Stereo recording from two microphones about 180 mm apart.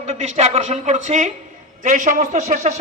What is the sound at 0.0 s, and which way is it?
A woman's voice, 40° right (ahead or behind).